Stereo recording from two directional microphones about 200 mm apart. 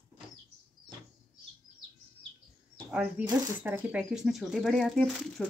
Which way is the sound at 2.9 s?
5° right (ahead or behind).